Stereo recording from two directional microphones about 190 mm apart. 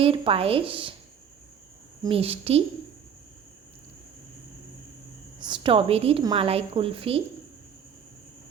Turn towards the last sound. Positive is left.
turn(degrees=-30)  # may be behind; listen again after turning